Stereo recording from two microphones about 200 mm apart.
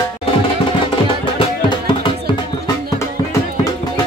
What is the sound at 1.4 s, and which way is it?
Music, 25° left (ahead or behind).